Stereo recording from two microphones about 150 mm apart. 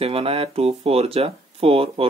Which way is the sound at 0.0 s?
40° right (ahead or behind).